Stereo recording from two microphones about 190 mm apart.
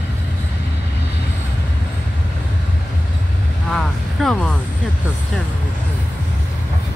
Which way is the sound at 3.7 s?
5° left (ahead or behind).